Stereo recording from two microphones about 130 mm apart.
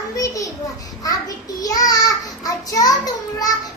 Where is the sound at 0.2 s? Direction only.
25° left (ahead or behind).